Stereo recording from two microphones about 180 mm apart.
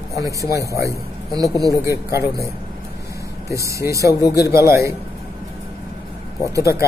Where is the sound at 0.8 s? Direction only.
20° right (ahead or behind).